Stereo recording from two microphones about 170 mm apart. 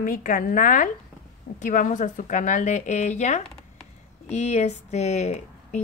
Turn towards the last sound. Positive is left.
turn(degrees=40)  # may be behind; listen again after turning